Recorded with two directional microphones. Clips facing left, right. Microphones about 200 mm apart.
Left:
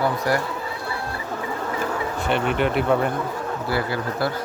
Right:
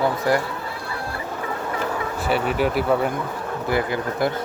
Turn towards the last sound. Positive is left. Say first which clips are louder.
# right 2 dB
turn(degrees=-20)  # may be behind; listen again after turning